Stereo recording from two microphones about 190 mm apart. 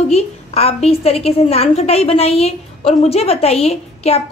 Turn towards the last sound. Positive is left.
turn(degrees=35)  # may be behind; listen again after turning